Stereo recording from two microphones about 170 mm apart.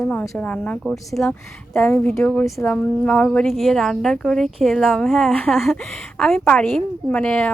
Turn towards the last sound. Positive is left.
turn(degrees=5)  # may be behind; listen again after turning